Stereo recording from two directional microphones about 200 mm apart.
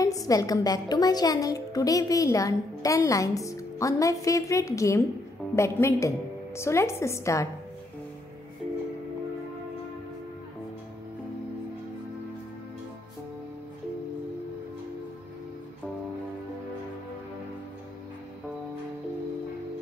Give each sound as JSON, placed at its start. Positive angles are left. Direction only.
{"t": 0.0, "sound": "a woman's voice", "side_deg": 15}